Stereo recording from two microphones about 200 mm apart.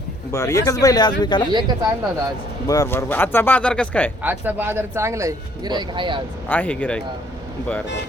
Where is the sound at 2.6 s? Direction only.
15° left (ahead or behind).